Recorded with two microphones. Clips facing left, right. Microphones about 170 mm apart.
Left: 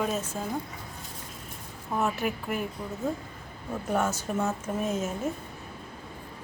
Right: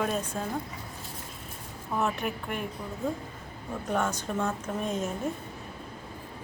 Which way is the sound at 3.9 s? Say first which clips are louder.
Left 1 dB; 5° left (ahead or behind).